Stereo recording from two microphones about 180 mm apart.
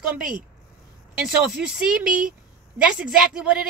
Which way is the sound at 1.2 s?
5° right (ahead or behind).